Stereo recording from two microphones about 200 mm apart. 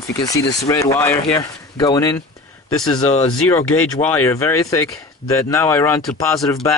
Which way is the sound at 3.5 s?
10° left (ahead or behind).